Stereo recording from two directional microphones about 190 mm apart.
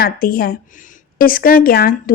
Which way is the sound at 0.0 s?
50° left (ahead or behind).